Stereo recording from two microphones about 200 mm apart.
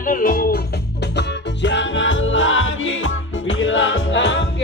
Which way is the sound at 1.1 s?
65° left (ahead or behind).